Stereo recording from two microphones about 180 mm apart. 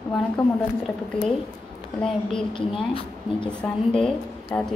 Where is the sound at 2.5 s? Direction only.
30° left (ahead or behind).